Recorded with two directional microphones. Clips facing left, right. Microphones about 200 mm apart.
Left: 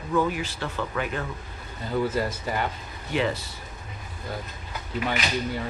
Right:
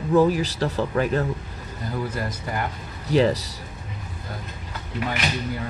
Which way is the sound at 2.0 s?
25° left (ahead or behind).